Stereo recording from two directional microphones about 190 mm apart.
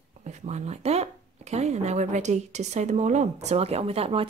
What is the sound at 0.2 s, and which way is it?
Speech, 40° right (ahead or behind).